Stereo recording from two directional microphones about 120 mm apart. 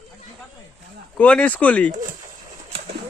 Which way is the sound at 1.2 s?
10° left (ahead or behind).